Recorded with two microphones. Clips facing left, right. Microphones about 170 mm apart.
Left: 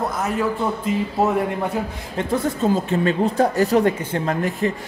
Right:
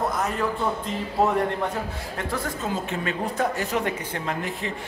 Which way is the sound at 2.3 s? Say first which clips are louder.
Left 10 dB; 25° left (ahead or behind).